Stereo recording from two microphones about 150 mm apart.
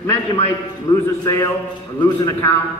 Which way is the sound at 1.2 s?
20° left (ahead or behind).